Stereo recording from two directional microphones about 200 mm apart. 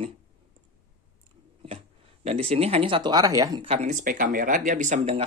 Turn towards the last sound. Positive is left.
turn(degrees=-35)  # may be behind; listen again after turning